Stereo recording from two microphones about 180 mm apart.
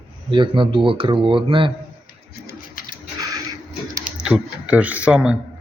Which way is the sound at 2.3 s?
55° left (ahead or behind).